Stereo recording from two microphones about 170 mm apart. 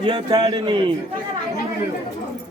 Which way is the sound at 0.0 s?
30° right (ahead or behind).